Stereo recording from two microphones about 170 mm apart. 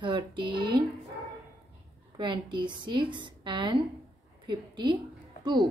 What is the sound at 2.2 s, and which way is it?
A woman's voice, 30° right (ahead or behind).